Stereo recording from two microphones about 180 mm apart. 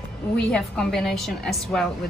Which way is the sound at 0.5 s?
5° left (ahead or behind).